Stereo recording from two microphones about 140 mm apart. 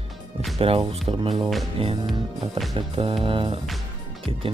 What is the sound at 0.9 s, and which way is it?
Speech, 40° right (ahead or behind).